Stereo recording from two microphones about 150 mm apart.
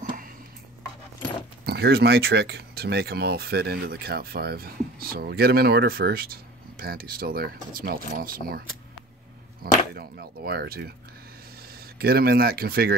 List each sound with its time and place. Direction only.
1.7 s speech: 90° right
9.6 s speech: 90° right
12.0 s speech: 90° right